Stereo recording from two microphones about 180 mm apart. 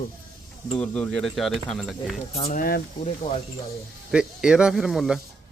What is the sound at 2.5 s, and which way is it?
Speech, 55° left (ahead or behind).